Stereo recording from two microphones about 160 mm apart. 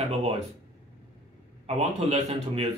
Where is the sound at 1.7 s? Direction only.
40° right (ahead or behind).